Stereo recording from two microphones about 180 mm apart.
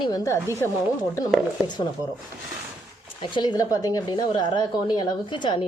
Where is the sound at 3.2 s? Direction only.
25° left (ahead or behind).